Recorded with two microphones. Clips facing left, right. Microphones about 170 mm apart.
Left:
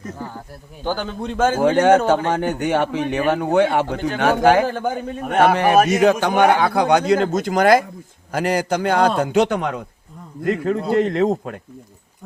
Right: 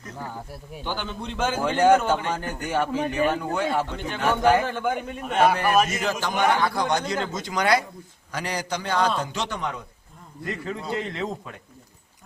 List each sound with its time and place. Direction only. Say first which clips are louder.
0.9 s speech: left 7 dB; 40° left (ahead or behind)
1.6 s a man's voice: left 4 dB; 75° left (ahead or behind)
4.6 s speech: left 4 dB; 35° left (ahead or behind)
5.2 s a man's voice: left 5 dB; 55° left (ahead or behind)